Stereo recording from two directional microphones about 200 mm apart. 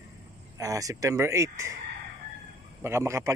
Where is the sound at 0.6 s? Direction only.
15° right (ahead or behind).